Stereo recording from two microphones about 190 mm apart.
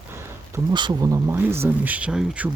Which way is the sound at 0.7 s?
20° right (ahead or behind).